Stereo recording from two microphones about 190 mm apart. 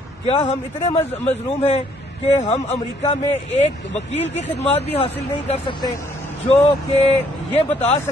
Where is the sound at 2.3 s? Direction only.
35° left (ahead or behind).